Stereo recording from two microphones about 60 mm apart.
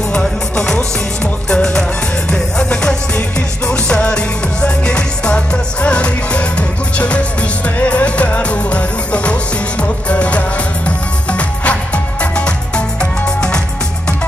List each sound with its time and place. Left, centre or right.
0.1 s music: centre